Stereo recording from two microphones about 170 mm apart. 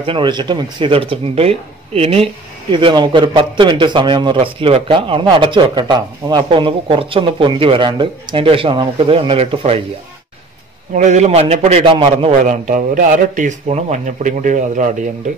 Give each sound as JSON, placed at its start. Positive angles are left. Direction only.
{"t": 0.0, "sound": "a man's voice", "side_deg": -30}
{"t": 11.0, "sound": "speech", "side_deg": -45}
{"t": 12.4, "sound": "speech", "side_deg": -50}